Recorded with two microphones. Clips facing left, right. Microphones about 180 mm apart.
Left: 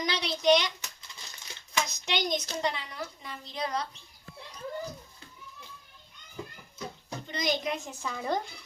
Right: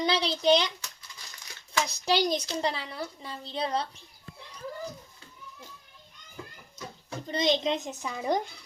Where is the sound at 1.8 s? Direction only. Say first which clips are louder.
Right 9 dB; 35° right (ahead or behind).